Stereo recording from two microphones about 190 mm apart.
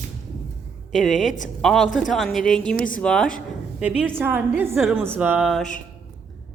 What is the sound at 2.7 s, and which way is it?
Speech, 45° left (ahead or behind).